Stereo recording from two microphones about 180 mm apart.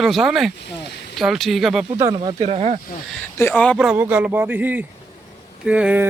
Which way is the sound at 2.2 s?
35° right (ahead or behind).